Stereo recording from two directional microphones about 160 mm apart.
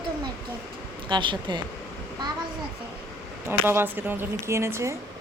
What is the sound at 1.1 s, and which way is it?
Speech, 30° right (ahead or behind).